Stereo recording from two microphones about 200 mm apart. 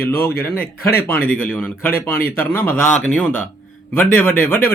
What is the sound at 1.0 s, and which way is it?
Speech, 5° left (ahead or behind).